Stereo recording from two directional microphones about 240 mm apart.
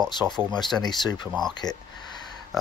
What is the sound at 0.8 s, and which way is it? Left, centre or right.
Speech, centre.